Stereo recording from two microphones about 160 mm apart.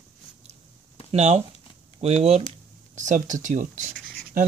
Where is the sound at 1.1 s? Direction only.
45° right (ahead or behind).